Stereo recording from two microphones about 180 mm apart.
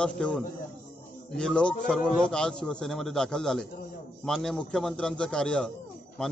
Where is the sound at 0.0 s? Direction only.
5° left (ahead or behind).